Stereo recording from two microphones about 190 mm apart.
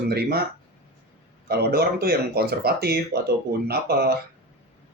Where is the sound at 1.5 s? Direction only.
55° right (ahead or behind).